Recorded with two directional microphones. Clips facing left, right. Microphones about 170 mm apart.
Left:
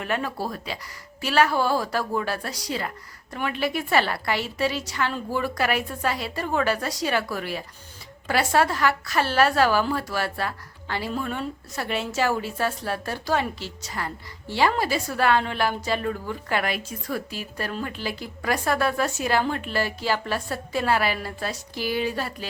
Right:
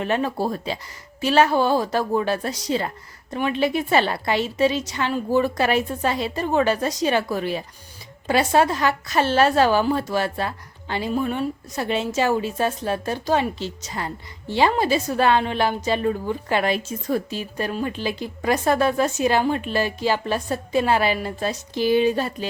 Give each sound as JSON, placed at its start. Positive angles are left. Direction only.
{"t": 0.0, "sound": "a woman's voice", "side_deg": -25}